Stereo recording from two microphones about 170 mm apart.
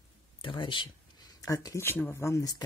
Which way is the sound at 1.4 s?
20° left (ahead or behind).